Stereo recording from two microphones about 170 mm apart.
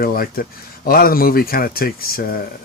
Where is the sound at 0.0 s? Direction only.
60° left (ahead or behind).